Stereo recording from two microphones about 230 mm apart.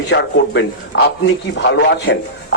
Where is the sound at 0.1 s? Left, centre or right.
Left.